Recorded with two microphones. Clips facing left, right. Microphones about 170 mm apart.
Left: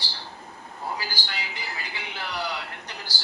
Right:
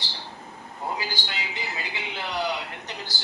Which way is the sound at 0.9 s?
20° right (ahead or behind).